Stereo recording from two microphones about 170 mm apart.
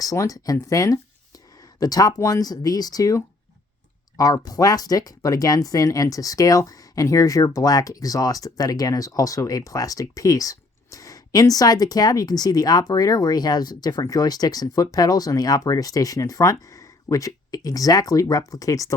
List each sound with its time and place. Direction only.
0.0 s speech: 20° left (ahead or behind)